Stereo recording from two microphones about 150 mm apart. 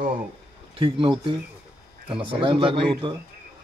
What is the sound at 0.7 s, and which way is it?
Speech, 35° right (ahead or behind).